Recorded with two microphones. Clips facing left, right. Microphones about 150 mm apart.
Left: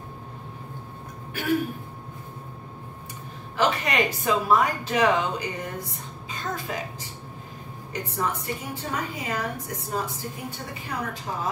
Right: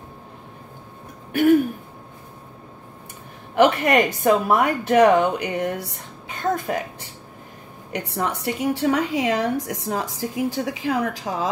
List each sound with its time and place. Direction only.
1.3 s throat clearing: 50° right (ahead or behind)
3.5 s speech: 60° right (ahead or behind)
7.9 s a woman's voice: 70° right (ahead or behind); by 11.5 s 90° right